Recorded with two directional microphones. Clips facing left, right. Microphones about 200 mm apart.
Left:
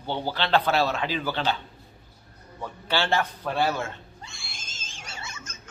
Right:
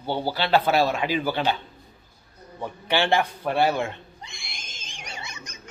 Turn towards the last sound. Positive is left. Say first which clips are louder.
# right 2 dB
turn(degrees=-15)  # may be behind; listen again after turning